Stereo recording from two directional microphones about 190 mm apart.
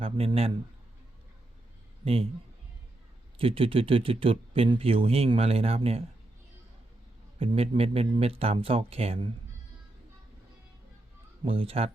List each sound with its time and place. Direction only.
0.0 s speech: 30° right (ahead or behind)
3.3 s speech: 30° right (ahead or behind)
7.3 s speech: 30° right (ahead or behind)
11.4 s speech: 30° right (ahead or behind)